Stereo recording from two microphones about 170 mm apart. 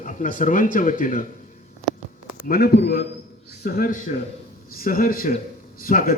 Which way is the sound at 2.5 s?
65° left (ahead or behind).